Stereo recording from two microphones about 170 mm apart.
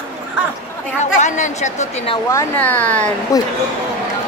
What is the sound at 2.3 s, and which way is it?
Speech, 15° left (ahead or behind).